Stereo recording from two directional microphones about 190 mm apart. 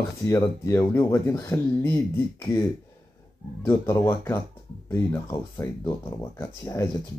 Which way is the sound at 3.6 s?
15° left (ahead or behind).